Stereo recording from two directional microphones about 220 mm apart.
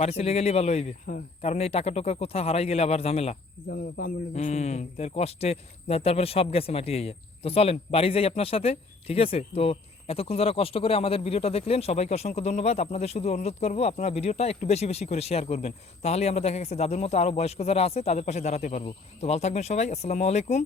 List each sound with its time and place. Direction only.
0.0 s speech: 25° left (ahead or behind)